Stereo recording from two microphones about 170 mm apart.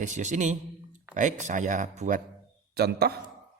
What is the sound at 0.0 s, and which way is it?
A man's voice, 45° right (ahead or behind).